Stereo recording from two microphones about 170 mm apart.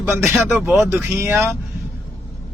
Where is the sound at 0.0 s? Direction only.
10° right (ahead or behind).